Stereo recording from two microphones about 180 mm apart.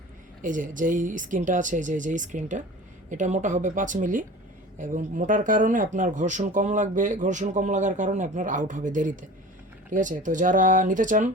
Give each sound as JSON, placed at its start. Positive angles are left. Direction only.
{"t": 0.4, "sound": "speech", "side_deg": -45}